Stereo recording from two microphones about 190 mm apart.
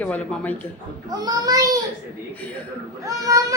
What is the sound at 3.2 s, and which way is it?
Speech, 20° right (ahead or behind).